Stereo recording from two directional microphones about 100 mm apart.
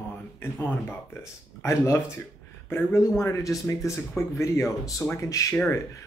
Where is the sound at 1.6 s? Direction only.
30° left (ahead or behind).